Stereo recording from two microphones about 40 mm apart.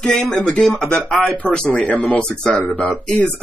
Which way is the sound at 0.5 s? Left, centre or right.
Left.